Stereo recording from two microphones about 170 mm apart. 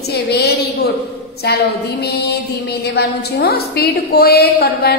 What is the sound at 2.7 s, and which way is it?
A woman's voice, 75° left (ahead or behind).